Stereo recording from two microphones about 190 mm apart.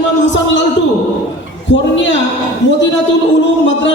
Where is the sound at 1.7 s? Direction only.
70° left (ahead or behind).